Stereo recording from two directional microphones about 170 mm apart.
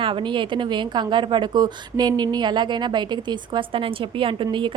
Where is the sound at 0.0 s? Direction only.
30° right (ahead or behind).